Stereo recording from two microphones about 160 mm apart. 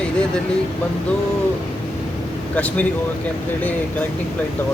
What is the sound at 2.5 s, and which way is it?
Speech, 10° left (ahead or behind).